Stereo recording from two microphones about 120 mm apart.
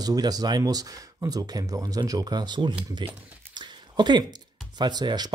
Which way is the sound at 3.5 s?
40° right (ahead or behind).